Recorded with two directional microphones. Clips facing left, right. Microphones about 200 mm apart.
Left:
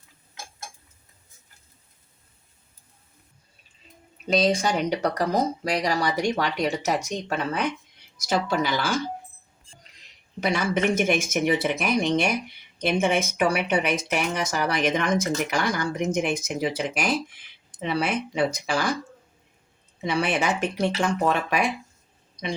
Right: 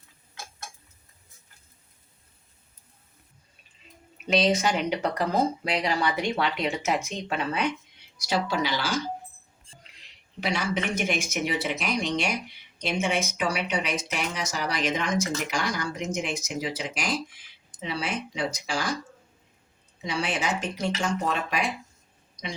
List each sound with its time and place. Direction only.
4.6 s speech: 40° left (ahead or behind)
10.4 s speech: 50° left (ahead or behind)
20.1 s speech: 60° left (ahead or behind)